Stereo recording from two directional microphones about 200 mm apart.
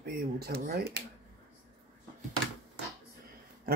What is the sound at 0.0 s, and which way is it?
Speech, 50° right (ahead or behind).